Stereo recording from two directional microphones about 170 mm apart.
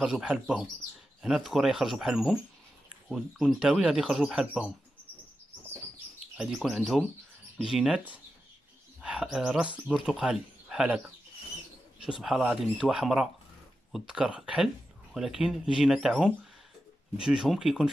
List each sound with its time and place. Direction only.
0.0 s speech: 5° right (ahead or behind)
6.3 s speech: centre (ahead or behind)
12.0 s speech: 5° right (ahead or behind)